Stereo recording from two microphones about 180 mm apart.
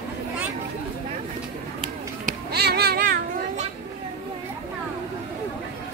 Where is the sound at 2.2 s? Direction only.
45° right (ahead or behind).